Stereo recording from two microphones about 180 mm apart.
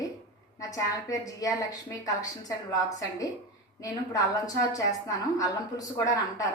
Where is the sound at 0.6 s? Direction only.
20° left (ahead or behind).